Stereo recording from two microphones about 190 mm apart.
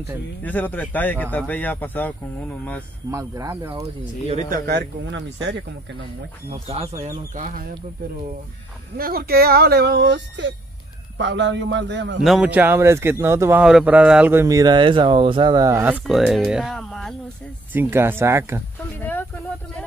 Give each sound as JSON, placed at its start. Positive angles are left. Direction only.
{"t": 0.4, "sound": "speech", "side_deg": 10}
{"t": 3.1, "sound": "a man's voice", "side_deg": -15}
{"t": 4.5, "sound": "speech", "side_deg": -60}
{"t": 6.7, "sound": "speech", "side_deg": -35}
{"t": 7.3, "sound": "speech", "side_deg": -45}
{"t": 8.9, "sound": "speech", "side_deg": -50}
{"t": 12.2, "sound": "a man's voice", "side_deg": 0}
{"t": 17.7, "sound": "a man's voice", "side_deg": -10}
{"t": 18.9, "sound": "a sound", "side_deg": 10}